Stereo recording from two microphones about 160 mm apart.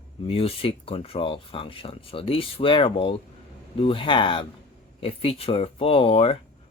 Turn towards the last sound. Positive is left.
turn(degrees=35)  # may be behind; listen again after turning